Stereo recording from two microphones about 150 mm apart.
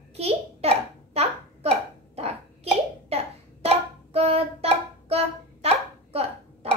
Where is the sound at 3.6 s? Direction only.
45° right (ahead or behind).